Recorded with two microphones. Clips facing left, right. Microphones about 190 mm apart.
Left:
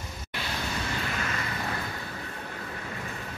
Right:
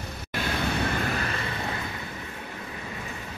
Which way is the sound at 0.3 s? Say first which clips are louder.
Right 6 dB; 55° right (ahead or behind).